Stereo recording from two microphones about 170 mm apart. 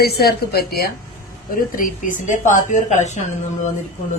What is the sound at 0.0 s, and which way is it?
A woman's voice, 65° left (ahead or behind).